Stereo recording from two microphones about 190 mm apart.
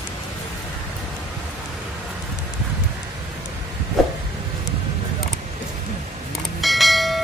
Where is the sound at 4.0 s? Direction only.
Centre (ahead or behind).